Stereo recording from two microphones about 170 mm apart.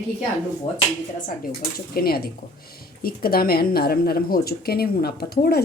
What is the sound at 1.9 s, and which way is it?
Speech, 65° left (ahead or behind).